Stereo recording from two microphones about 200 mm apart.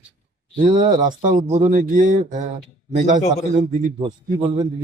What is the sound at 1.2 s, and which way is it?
Speech, 35° right (ahead or behind).